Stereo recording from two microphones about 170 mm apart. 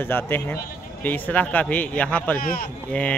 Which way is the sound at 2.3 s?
60° left (ahead or behind).